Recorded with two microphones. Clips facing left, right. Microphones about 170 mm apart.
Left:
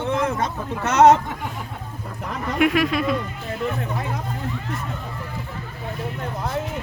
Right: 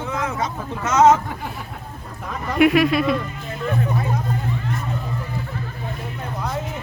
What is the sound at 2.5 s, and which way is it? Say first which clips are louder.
Speech: right 4 dB; 10° right (ahead or behind).